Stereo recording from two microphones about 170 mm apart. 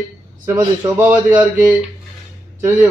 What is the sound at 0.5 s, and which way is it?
A man's voice, 15° right (ahead or behind).